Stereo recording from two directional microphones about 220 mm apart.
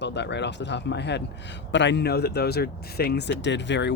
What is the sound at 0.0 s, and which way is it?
A man's voice, 50° left (ahead or behind).